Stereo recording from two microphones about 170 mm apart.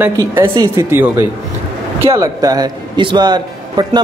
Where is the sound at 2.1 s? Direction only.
20° right (ahead or behind).